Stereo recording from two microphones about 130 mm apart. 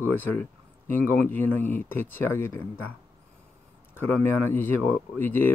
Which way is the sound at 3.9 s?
15° left (ahead or behind).